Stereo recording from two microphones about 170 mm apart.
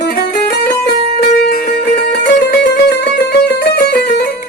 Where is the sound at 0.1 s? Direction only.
70° left (ahead or behind).